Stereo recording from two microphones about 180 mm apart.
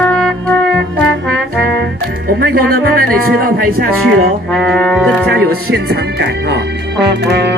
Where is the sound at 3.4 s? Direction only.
55° right (ahead or behind).